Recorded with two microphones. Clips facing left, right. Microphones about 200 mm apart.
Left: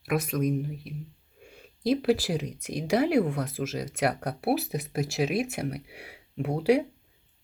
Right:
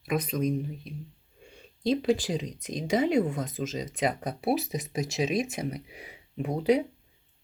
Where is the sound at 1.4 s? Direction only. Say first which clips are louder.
Left 2 dB; 5° left (ahead or behind).